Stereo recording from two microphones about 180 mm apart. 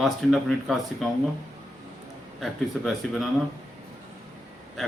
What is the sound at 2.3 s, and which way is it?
Speech, centre (ahead or behind).